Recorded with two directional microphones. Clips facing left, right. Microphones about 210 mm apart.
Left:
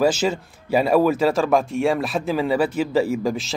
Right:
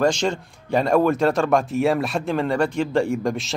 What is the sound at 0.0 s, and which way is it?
Speech, 5° left (ahead or behind).